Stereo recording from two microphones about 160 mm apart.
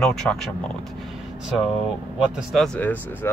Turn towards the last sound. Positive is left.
turn(degrees=10)  # may be behind; listen again after turning